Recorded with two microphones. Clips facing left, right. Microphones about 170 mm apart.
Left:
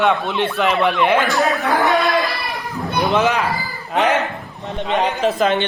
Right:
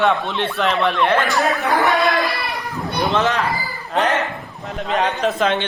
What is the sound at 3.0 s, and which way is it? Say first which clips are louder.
Speech: left 2 dB; 20° left (ahead or behind).